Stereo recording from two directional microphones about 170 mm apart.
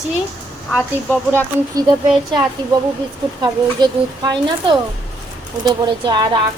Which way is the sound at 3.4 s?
25° right (ahead or behind).